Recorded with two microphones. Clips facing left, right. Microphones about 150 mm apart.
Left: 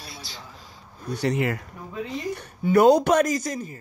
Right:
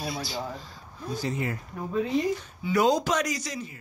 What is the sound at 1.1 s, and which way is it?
Speech, 75° left (ahead or behind).